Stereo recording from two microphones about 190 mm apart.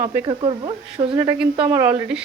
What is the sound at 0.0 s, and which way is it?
Speech, 10° right (ahead or behind).